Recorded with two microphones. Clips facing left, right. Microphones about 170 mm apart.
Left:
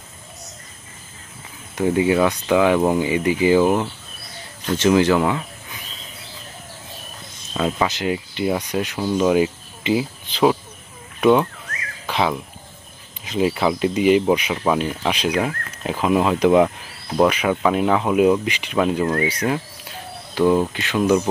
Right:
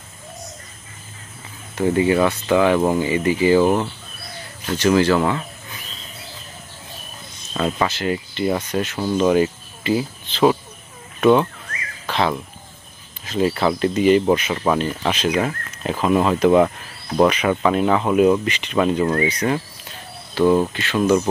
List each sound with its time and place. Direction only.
1.8 s speech: 10° left (ahead or behind)
4.7 s speech: 20° left (ahead or behind)
7.5 s speech: 5° left (ahead or behind)
11.1 s speech: 5° left (ahead or behind)